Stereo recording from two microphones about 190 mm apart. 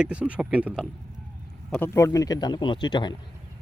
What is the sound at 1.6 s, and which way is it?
A man's voice, 10° left (ahead or behind).